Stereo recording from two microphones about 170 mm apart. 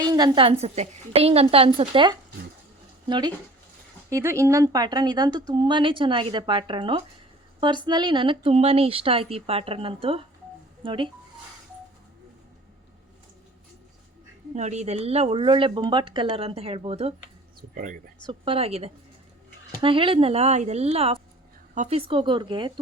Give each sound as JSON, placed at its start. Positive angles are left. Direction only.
{"t": 0.1, "sound": "a woman's voice", "side_deg": -25}
{"t": 14.5, "sound": "speech", "side_deg": -40}
{"t": 17.7, "sound": "speech", "side_deg": -55}
{"t": 18.3, "sound": "speech", "side_deg": -35}